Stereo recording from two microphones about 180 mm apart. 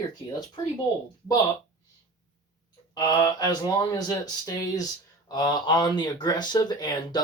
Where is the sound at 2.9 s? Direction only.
20° left (ahead or behind).